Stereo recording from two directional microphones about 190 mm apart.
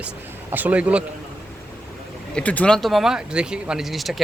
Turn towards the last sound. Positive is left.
turn(degrees=0)  # may be behind; listen again after turning